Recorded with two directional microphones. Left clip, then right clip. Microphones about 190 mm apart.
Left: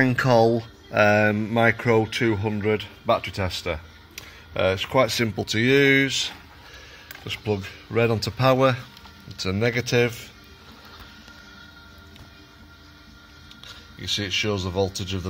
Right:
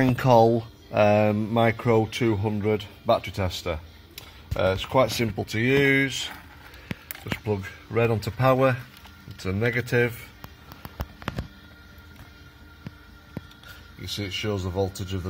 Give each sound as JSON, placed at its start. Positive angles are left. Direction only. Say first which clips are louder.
{"t": 0.0, "sound": "speech", "louder": "even", "side_deg": 0}
{"t": 14.2, "sound": "speech", "louder": "left 2 dB", "side_deg": 5}